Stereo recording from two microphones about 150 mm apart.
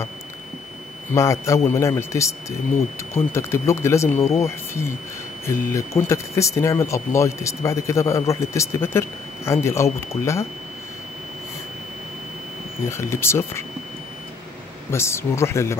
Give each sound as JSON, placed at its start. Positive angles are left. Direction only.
{"t": 1.1, "sound": "speech", "side_deg": 20}
{"t": 12.8, "sound": "speech", "side_deg": 20}
{"t": 14.9, "sound": "speech", "side_deg": 15}